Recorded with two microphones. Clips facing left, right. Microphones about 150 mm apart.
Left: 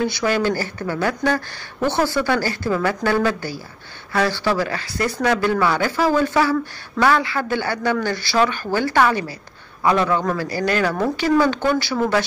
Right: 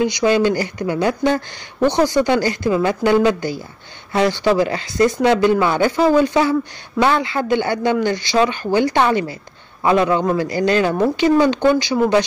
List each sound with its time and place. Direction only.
0.0 s speech: 20° right (ahead or behind)